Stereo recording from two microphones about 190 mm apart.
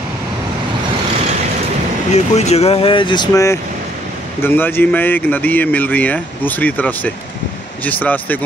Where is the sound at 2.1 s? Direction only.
35° left (ahead or behind).